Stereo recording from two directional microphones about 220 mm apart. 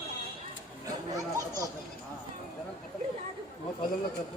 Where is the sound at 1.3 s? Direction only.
15° right (ahead or behind).